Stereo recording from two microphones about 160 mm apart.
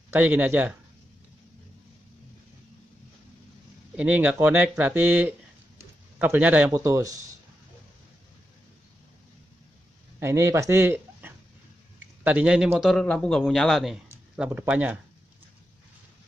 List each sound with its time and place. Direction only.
0.1 s speech: 10° right (ahead or behind)
3.9 s speech: 10° right (ahead or behind)
6.8 s speech: 20° right (ahead or behind)
10.2 s speech: 15° right (ahead or behind)
12.9 s a man's voice: 5° left (ahead or behind); by 15.0 s 10° right (ahead or behind)